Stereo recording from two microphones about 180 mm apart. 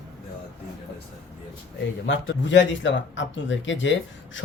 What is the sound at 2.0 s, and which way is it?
A man's voice, 85° left.